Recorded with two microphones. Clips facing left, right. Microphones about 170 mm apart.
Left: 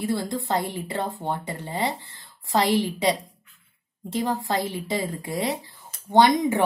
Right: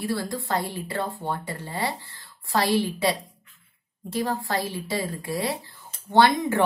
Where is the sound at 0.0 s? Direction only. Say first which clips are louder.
Left 2 dB; 20° left (ahead or behind).